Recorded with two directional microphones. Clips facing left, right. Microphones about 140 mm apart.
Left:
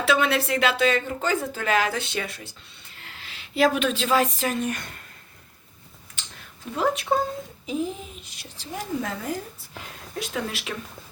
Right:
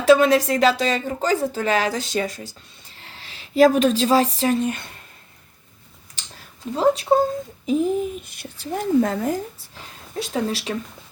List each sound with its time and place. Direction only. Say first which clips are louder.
0.0 s speech: right 8 dB; 40° right (ahead or behind)
6.7 s speech: right 6 dB; 30° right (ahead or behind)
7.7 s a child's voice: right 9 dB; 50° right (ahead or behind)
10.2 s speech: right 6 dB; 30° right (ahead or behind)